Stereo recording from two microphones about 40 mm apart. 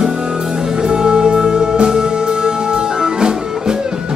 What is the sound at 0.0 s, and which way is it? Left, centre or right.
Music, right.